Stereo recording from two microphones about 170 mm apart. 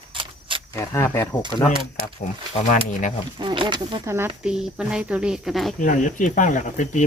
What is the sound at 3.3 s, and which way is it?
Speech, 30° right (ahead or behind).